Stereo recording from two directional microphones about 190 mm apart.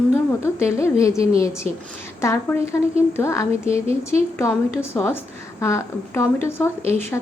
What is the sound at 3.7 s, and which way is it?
Speech, 30° right (ahead or behind).